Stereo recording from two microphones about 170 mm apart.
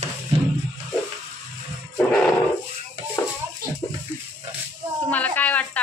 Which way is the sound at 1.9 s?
5° left (ahead or behind).